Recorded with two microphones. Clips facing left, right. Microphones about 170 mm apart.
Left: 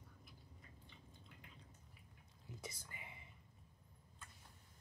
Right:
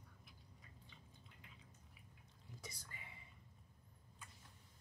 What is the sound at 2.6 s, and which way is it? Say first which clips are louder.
Whispering: left 3 dB; 25° left (ahead or behind).